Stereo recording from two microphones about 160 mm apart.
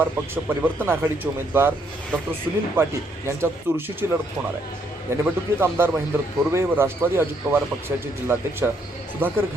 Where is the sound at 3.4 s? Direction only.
15° right (ahead or behind).